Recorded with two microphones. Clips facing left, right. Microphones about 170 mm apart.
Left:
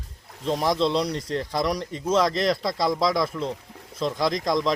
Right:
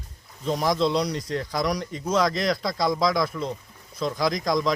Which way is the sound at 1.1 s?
30° left (ahead or behind).